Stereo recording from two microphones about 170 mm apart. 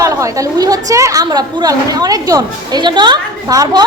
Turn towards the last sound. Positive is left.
turn(degrees=-20)  # may be behind; listen again after turning